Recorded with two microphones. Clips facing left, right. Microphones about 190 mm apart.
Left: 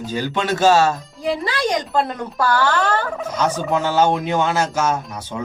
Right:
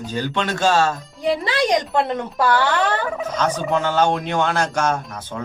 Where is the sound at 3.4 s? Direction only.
10° left (ahead or behind).